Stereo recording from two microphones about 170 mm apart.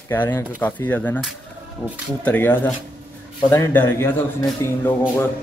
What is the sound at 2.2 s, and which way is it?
Speech, 10° left (ahead or behind).